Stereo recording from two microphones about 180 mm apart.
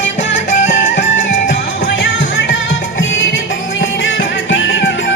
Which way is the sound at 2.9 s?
90° left.